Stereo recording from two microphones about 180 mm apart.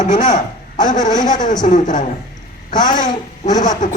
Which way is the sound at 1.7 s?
45° left (ahead or behind).